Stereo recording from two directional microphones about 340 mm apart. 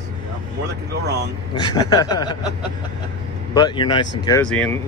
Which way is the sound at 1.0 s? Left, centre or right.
Right.